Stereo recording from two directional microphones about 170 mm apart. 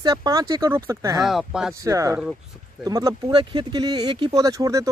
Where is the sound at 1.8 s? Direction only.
20° right (ahead or behind).